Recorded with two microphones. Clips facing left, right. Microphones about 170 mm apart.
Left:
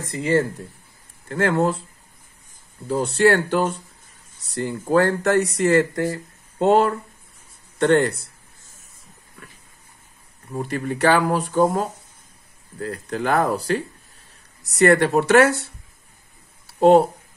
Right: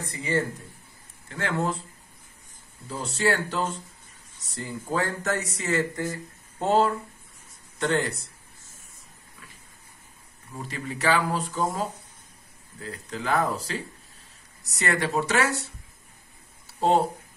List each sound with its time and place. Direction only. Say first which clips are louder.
0.0 s speech: left 7 dB; 60° left (ahead or behind)
2.9 s a man's voice: left 9 dB; 65° left (ahead or behind)
10.5 s speech: left 9 dB; 55° left (ahead or behind)
12.8 s speech: left 7 dB; 60° left (ahead or behind)
16.6 s a sound: left 9 dB; 65° left (ahead or behind)